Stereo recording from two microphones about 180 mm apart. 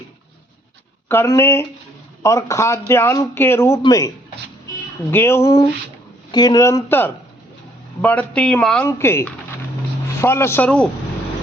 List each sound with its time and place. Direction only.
1.0 s a man's voice: 15° left (ahead or behind)
5.1 s a man's voice: 15° left (ahead or behind)